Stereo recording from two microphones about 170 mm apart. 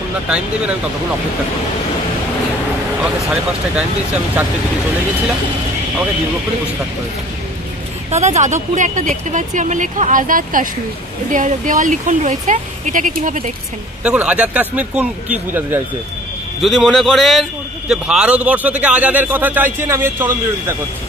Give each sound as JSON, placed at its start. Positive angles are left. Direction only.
{"t": 8.1, "sound": "speech", "side_deg": -40}
{"t": 14.0, "sound": "a man's voice", "side_deg": -10}
{"t": 16.6, "sound": "a man's voice", "side_deg": 0}